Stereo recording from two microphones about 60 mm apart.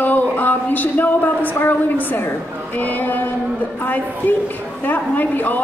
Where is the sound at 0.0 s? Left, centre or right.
Left.